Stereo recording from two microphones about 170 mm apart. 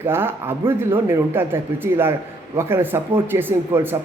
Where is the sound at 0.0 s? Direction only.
15° right (ahead or behind).